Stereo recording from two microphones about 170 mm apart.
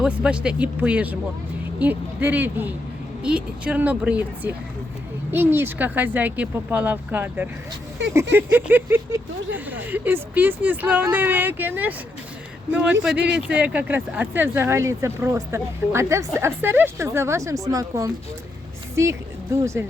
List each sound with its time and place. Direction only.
0.0 s speech: 5° right (ahead or behind)
13.1 s speech: 5° right (ahead or behind)